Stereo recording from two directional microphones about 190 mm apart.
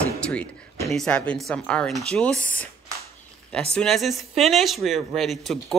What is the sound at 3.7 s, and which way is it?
Speech, 5° left (ahead or behind).